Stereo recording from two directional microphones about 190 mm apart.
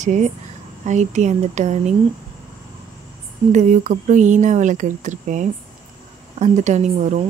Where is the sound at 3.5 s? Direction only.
40° right (ahead or behind).